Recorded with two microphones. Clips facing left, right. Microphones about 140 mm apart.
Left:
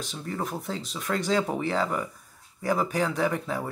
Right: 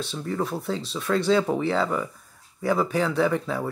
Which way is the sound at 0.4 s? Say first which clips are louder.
Right 4 dB; 15° left (ahead or behind).